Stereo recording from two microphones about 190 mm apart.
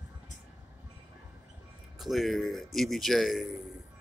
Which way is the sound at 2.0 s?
Centre (ahead or behind).